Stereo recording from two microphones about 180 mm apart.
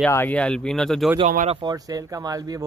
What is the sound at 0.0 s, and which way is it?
Speech, 10° left (ahead or behind).